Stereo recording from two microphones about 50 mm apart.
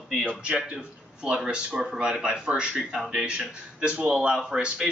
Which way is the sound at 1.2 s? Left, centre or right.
Centre.